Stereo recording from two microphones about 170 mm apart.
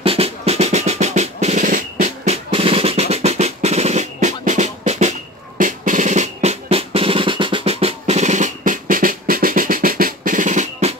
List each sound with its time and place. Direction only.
0.0 s drum roll: 35° right (ahead or behind)
5.6 s drum: 50° right (ahead or behind)